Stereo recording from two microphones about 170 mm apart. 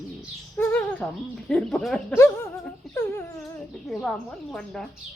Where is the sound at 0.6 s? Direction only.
10° left (ahead or behind).